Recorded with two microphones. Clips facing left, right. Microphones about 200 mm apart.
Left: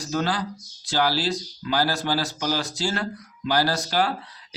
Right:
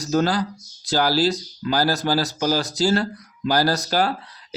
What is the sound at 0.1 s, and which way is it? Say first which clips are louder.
Speech: right 6 dB; 40° right (ahead or behind).